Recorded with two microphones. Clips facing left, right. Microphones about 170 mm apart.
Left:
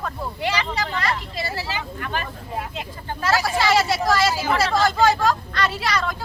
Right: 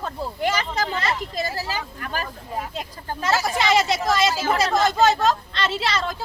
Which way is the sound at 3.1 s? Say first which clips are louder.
Left 1 dB; 20° right (ahead or behind).